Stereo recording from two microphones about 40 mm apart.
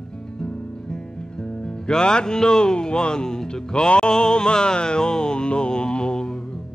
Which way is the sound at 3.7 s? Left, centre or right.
Left.